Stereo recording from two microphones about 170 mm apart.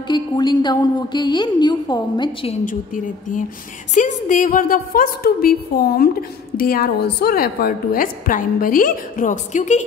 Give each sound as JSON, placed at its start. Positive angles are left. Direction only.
{"t": 0.1, "sound": "a woman's voice", "side_deg": 25}
{"t": 2.6, "sound": "a woman's voice", "side_deg": 50}